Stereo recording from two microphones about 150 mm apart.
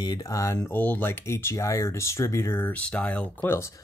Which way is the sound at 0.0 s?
25° left (ahead or behind).